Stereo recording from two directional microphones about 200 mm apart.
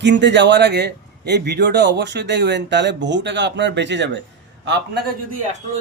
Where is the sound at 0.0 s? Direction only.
60° right (ahead or behind).